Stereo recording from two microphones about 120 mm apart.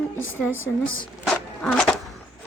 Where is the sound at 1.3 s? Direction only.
10° left (ahead or behind).